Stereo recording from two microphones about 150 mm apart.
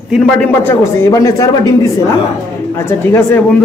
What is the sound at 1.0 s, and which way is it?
Speech, 20° left (ahead or behind).